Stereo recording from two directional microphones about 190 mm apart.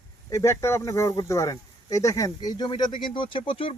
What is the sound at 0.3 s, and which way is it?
Speech, 15° left (ahead or behind).